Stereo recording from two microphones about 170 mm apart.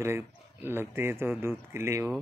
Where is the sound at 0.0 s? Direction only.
15° right (ahead or behind).